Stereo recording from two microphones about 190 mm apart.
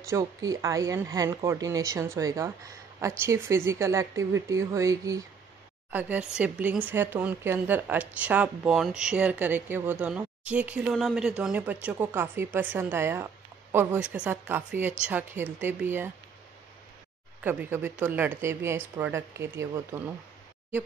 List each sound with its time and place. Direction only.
0.1 s speech: 15° right (ahead or behind)
17.4 s speech: 10° right (ahead or behind)